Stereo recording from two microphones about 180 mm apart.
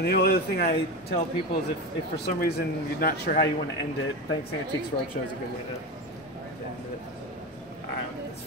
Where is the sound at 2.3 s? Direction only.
60° left (ahead or behind).